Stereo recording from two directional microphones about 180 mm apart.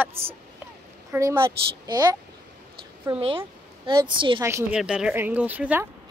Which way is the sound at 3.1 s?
30° right (ahead or behind).